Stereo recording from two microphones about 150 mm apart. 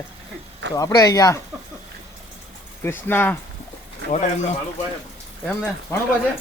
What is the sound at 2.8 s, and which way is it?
Speech, 15° left (ahead or behind).